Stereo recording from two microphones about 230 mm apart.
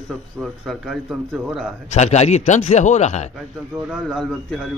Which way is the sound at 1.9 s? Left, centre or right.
Left.